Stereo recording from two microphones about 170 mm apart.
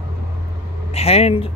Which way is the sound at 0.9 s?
35° left (ahead or behind).